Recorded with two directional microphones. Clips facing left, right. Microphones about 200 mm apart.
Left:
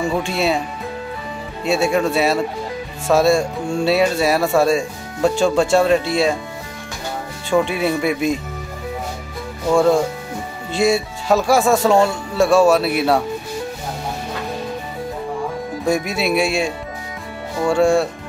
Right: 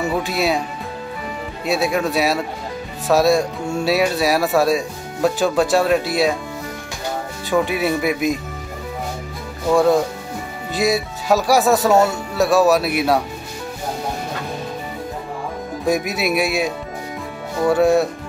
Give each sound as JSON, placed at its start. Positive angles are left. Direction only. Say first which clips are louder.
{"t": 0.0, "sound": "speech", "louder": "left 1 dB", "side_deg": -5}
{"t": 1.7, "sound": "speech", "louder": "left 2 dB", "side_deg": 0}
{"t": 7.4, "sound": "speech", "louder": "left 1 dB", "side_deg": -5}
{"t": 9.7, "sound": "speech", "louder": "even", "side_deg": 0}
{"t": 15.8, "sound": "speech", "louder": "even", "side_deg": -5}